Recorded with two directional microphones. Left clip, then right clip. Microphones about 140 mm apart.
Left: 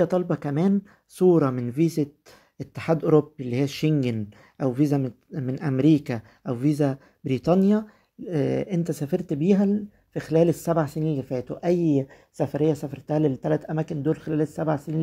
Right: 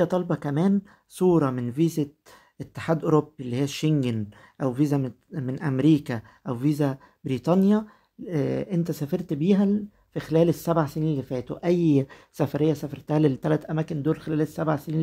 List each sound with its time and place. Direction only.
0.0 s speech: centre (ahead or behind); by 12.5 s 20° right (ahead or behind)
12.5 s speech: 5° right (ahead or behind)
13.2 s speech: 20° right (ahead or behind)
13.6 s speech: 10° right (ahead or behind)